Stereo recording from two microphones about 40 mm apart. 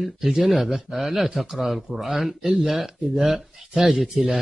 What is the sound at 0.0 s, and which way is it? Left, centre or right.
Speech, centre.